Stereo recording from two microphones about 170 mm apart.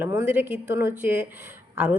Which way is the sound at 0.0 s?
10° right (ahead or behind).